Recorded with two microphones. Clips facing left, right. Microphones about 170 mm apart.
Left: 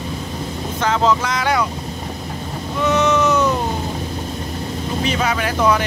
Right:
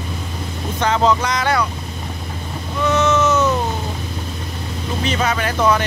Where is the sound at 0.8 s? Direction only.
5° left (ahead or behind).